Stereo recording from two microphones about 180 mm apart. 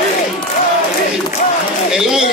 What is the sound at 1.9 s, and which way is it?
Speech, centre (ahead or behind).